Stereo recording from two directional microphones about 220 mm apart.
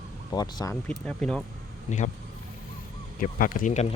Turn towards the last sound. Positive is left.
turn(degrees=30)  # may be behind; listen again after turning